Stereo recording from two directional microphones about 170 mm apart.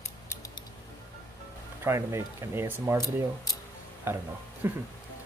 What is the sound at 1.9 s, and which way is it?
Speech, 15° right (ahead or behind).